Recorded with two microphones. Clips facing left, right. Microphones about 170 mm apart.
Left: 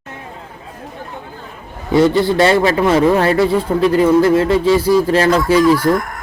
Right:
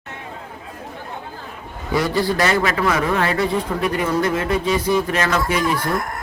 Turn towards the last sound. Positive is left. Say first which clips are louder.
# left 9 dB
turn(degrees=35)  # may be behind; listen again after turning